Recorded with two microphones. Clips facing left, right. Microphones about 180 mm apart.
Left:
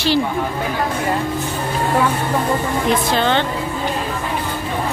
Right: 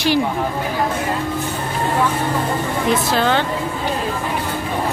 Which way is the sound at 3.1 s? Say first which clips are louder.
Even; 5° right (ahead or behind).